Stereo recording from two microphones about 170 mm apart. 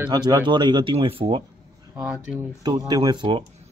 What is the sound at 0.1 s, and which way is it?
Speech, 25° right (ahead or behind).